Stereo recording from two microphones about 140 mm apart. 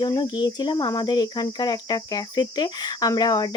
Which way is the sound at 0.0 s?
30° left (ahead or behind).